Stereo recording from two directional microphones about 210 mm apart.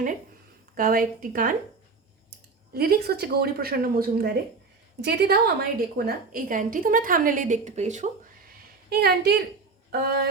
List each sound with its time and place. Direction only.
0.8 s speech: 45° right (ahead or behind)
2.7 s a woman's voice: 45° right (ahead or behind)